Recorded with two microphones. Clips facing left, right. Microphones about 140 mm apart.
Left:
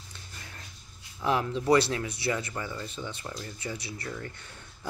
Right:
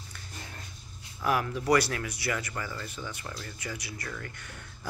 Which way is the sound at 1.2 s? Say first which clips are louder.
Left 1 dB; 25° left (ahead or behind).